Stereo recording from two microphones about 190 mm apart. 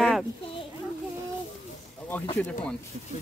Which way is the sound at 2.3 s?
5° left (ahead or behind).